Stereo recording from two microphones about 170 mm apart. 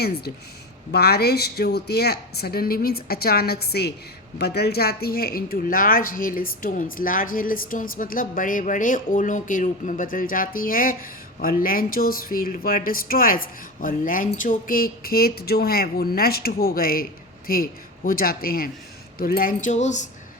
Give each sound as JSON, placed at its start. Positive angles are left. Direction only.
{"t": 0.9, "sound": "speech", "side_deg": 70}